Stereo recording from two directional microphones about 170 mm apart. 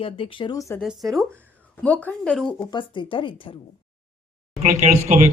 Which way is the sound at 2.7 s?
30° left (ahead or behind).